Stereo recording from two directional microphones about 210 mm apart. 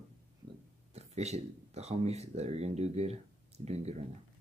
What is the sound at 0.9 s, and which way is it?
Speech, 30° right (ahead or behind).